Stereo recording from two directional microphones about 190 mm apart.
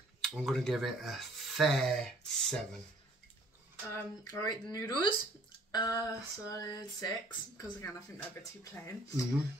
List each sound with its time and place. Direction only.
0.2 s speech: centre (ahead or behind)
3.9 s speech: 20° left (ahead or behind)